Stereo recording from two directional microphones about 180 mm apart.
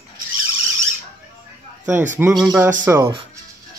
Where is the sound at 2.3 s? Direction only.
5° right (ahead or behind).